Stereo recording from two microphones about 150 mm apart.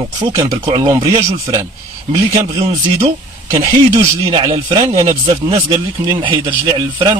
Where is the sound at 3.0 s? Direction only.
45° right (ahead or behind).